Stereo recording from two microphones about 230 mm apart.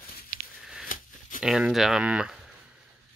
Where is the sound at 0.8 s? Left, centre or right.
Left.